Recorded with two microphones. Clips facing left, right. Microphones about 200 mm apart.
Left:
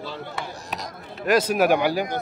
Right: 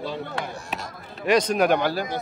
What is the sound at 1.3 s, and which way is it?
Speech, 5° left (ahead or behind).